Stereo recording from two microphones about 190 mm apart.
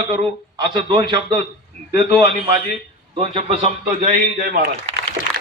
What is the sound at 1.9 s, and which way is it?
Speech, 60° left (ahead or behind).